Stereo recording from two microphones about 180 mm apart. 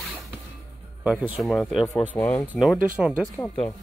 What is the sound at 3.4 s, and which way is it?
Speech, 10° left (ahead or behind).